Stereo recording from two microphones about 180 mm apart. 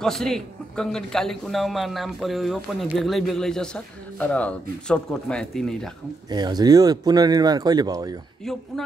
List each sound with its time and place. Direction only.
0.0 s a man's voice: centre (ahead or behind)
6.3 s speech: 20° right (ahead or behind)